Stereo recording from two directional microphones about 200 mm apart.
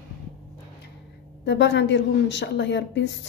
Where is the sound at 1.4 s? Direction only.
60° left (ahead or behind).